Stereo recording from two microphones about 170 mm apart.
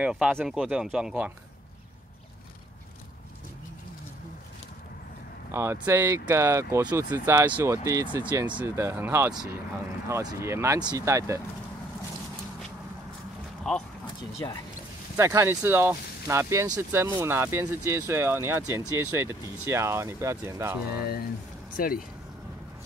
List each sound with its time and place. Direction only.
0.0 s speech: 5° right (ahead or behind)
5.5 s speech: 15° right (ahead or behind)
8.3 s speech: 25° right (ahead or behind)
8.5 s speech: 15° right (ahead or behind)
13.7 s speech: 5° left (ahead or behind)
14.4 s speech: 20° left (ahead or behind)
15.1 s speech: 15° right (ahead or behind)
20.9 s speech: 65° left (ahead or behind)